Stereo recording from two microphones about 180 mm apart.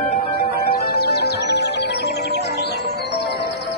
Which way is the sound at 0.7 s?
60° left (ahead or behind).